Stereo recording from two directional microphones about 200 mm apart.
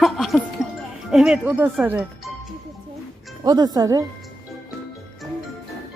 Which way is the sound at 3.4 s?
20° right (ahead or behind).